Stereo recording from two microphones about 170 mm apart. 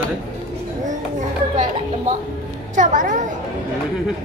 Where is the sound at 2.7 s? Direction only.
50° right (ahead or behind).